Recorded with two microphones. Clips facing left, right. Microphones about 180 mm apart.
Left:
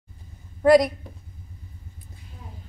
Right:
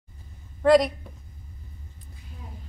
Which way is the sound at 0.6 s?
10° left (ahead or behind).